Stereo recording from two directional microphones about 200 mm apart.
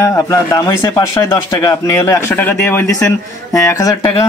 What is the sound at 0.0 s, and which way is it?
Speech, 15° left (ahead or behind).